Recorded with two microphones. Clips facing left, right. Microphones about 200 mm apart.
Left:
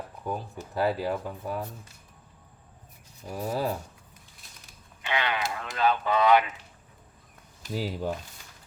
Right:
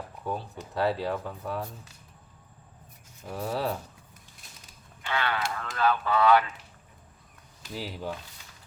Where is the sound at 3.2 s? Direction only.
5° left (ahead or behind).